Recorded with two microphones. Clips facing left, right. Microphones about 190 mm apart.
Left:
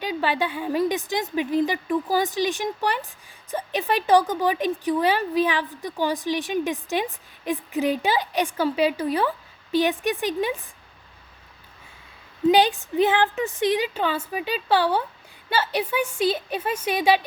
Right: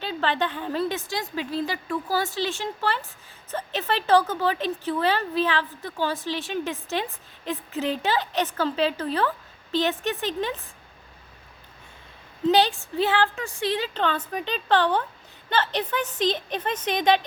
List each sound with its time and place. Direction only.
0.0 s a woman's voice: 10° left (ahead or behind)
12.5 s a woman's voice: 15° left (ahead or behind)